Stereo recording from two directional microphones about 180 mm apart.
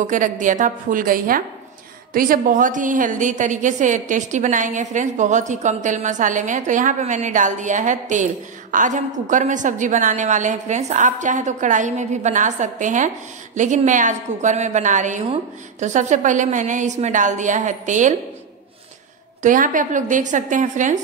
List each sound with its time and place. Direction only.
0.0 s a woman's voice: 45° right (ahead or behind)
19.4 s a woman's voice: 45° right (ahead or behind)